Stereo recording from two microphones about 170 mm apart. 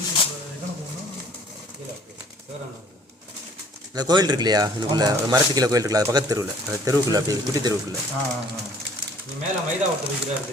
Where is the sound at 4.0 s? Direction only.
25° right (ahead or behind).